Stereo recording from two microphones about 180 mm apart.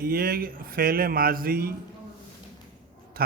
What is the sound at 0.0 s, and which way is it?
Speech, 55° right (ahead or behind).